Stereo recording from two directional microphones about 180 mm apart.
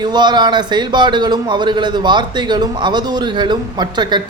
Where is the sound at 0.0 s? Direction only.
25° right (ahead or behind).